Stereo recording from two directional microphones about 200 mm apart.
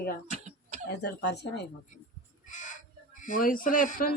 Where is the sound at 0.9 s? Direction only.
60° left (ahead or behind).